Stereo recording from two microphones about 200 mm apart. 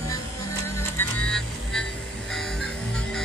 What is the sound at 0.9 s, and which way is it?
Music, 5° left (ahead or behind).